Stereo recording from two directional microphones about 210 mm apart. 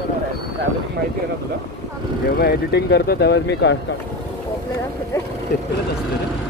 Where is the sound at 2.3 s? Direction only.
50° left (ahead or behind).